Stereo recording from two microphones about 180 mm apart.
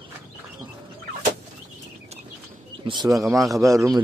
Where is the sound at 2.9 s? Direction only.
20° right (ahead or behind).